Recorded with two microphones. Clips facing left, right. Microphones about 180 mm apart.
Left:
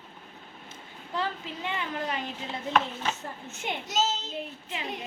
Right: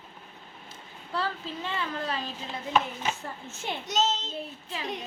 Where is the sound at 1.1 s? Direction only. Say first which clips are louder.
Even; 15° left (ahead or behind).